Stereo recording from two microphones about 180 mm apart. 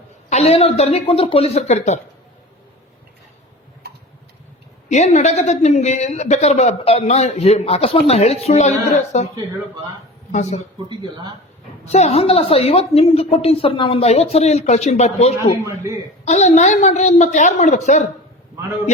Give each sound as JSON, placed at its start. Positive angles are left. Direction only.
{"t": 0.3, "sound": "speech", "side_deg": 35}
{"t": 4.9, "sound": "speech", "side_deg": 40}
{"t": 10.8, "sound": "speech", "side_deg": -25}
{"t": 11.9, "sound": "speech", "side_deg": 40}
{"t": 15.6, "sound": "a man's voice", "side_deg": -15}
{"t": 16.2, "sound": "speech", "side_deg": 40}